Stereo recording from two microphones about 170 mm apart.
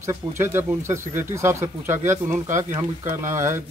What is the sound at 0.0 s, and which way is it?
Speech, 20° right (ahead or behind).